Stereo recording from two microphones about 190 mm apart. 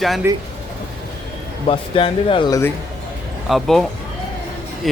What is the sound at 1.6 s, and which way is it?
Speech, 30° left (ahead or behind).